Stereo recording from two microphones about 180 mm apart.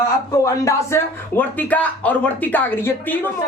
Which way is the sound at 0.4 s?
15° left (ahead or behind).